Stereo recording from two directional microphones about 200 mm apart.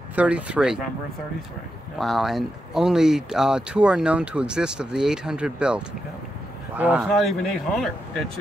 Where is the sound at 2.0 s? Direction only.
Centre (ahead or behind).